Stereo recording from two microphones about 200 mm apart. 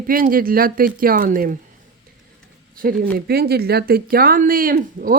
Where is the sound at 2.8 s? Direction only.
50° right (ahead or behind).